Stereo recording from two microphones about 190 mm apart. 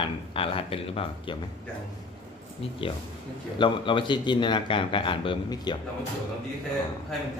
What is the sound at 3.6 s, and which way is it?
Speech, 25° left (ahead or behind).